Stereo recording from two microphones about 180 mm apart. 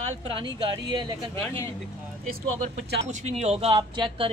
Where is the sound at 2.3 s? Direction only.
65° right (ahead or behind).